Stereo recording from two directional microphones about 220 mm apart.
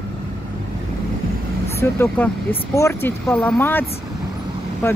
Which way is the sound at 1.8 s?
10° left (ahead or behind).